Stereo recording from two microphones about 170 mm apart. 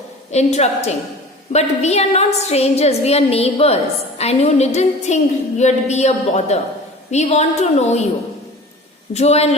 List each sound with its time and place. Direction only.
0.3 s a woman's voice: 40° left (ahead or behind)
9.1 s a woman's voice: 40° left (ahead or behind)